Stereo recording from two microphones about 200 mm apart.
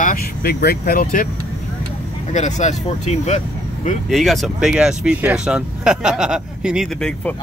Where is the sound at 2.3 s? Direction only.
35° left (ahead or behind).